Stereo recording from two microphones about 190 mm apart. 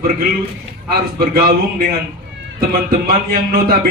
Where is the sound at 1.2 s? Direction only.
50° right (ahead or behind).